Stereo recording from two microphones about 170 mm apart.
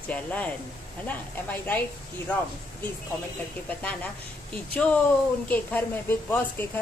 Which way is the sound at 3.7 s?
10° left (ahead or behind).